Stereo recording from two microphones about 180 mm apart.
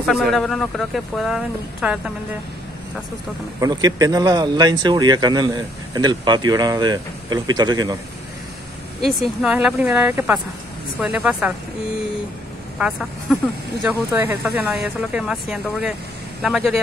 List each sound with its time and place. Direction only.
0.0 s speech: centre (ahead or behind)
3.5 s speech: 20° right (ahead or behind)
9.0 s speech: centre (ahead or behind)
12.7 s speech: 5° right (ahead or behind)